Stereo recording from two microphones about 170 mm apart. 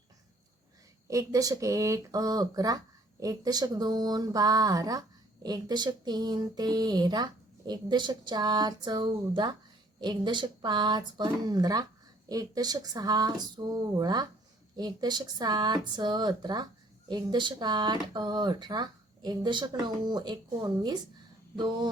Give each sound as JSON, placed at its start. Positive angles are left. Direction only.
{"t": 1.0, "sound": "speech", "side_deg": -20}